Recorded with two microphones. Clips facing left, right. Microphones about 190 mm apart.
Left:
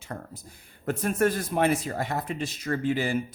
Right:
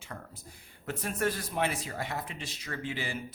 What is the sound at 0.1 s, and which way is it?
A man's voice, 45° left (ahead or behind).